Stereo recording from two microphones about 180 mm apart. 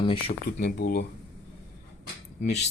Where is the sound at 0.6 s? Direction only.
60° left (ahead or behind).